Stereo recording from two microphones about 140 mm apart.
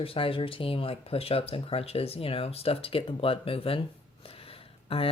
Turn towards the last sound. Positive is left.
turn(degrees=45)  # may be behind; listen again after turning